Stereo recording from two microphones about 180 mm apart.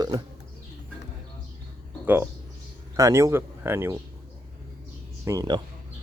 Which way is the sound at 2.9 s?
15° right (ahead or behind).